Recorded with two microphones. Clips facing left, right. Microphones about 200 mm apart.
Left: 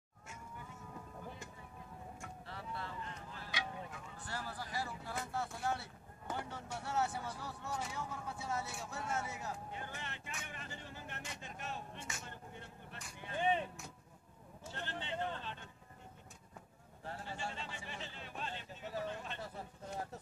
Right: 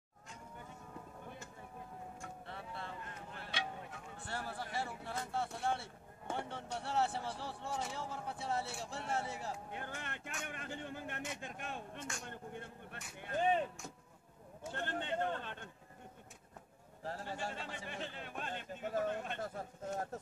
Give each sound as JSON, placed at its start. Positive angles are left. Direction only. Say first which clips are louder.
{"t": 2.4, "sound": "vehicle", "louder": "left 2 dB", "side_deg": -25}
{"t": 3.0, "sound": "music", "louder": "left 1 dB", "side_deg": -55}
{"t": 4.2, "sound": "a sound", "louder": "right 2 dB", "side_deg": -25}
{"t": 4.7, "sound": "speech", "louder": "even", "side_deg": -25}
{"t": 9.7, "sound": "a man's voice", "louder": "right 1 dB", "side_deg": -55}
{"t": 14.6, "sound": "a man's voice", "louder": "right 5 dB", "side_deg": -50}
{"t": 17.0, "sound": "a man's voice", "louder": "right 3 dB", "side_deg": -40}